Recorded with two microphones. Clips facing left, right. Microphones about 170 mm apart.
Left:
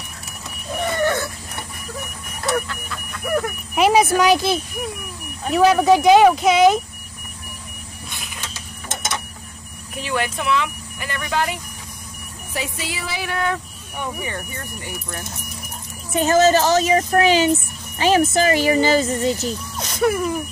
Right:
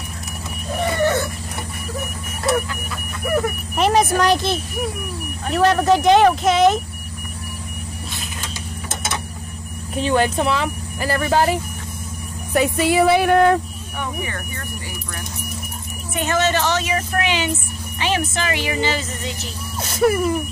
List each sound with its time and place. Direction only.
2.4 s vehicle: 5° right (ahead or behind)
3.7 s speech: 5° left (ahead or behind)
9.9 s speech: 30° right (ahead or behind)
12.5 s speech: 55° right (ahead or behind)
16.1 s speech: 35° left (ahead or behind)
19.8 s speech: 5° right (ahead or behind)